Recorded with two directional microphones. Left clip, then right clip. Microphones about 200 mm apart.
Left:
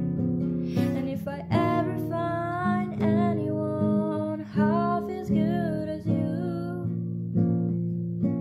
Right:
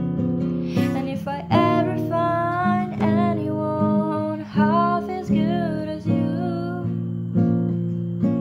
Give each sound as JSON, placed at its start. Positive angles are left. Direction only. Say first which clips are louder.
{"t": 1.5, "sound": "music", "louder": "right 7 dB", "side_deg": -5}
{"t": 7.3, "sound": "music", "louder": "right 5 dB", "side_deg": -25}